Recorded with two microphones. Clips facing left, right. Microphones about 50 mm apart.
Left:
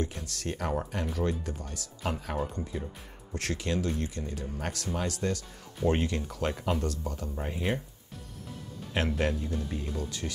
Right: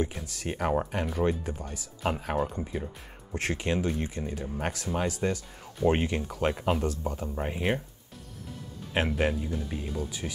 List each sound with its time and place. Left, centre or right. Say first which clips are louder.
0.0 s speech: right 2 dB; centre
8.9 s speech: right 2 dB; centre